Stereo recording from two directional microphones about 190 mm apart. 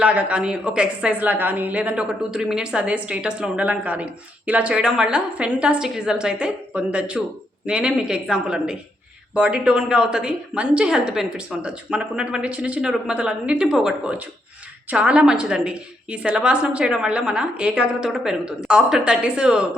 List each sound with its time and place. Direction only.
0.0 s a woman's voice: 5° right (ahead or behind)